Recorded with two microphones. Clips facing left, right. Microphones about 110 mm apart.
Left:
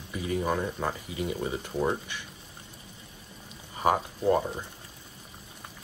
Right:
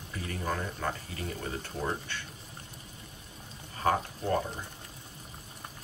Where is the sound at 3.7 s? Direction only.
15° left (ahead or behind).